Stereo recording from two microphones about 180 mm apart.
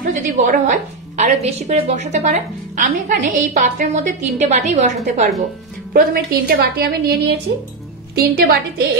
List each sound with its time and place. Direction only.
0.1 s a woman's voice: 45° right (ahead or behind)
5.9 s a woman's voice: 55° right (ahead or behind)